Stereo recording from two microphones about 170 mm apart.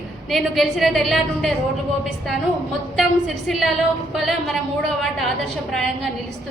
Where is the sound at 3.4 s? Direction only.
Centre (ahead or behind).